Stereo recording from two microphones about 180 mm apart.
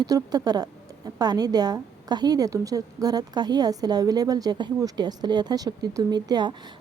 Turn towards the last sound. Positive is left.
turn(degrees=-25)  # may be behind; listen again after turning